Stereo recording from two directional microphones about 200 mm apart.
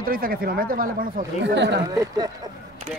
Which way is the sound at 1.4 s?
60° right (ahead or behind).